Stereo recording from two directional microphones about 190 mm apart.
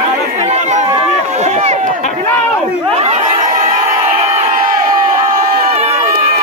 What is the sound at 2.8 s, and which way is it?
Crowd, 35° right (ahead or behind).